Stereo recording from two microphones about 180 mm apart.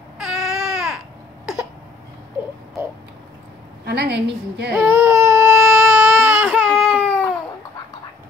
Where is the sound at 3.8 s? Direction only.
65° right (ahead or behind).